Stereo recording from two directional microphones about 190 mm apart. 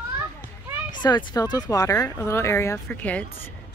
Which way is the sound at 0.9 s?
25° left (ahead or behind).